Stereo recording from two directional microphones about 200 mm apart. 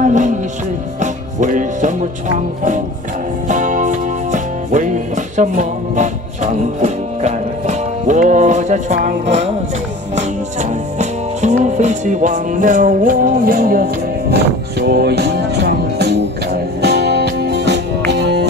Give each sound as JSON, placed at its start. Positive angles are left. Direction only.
{"t": 0.0, "sound": "music", "side_deg": -40}